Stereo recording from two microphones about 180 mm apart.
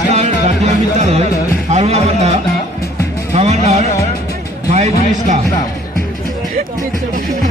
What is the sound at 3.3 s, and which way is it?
A man's voice, 35° right (ahead or behind).